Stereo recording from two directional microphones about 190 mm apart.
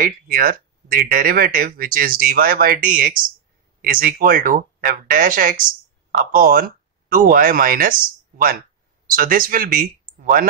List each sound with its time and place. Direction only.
0.0 s speech: 50° right (ahead or behind)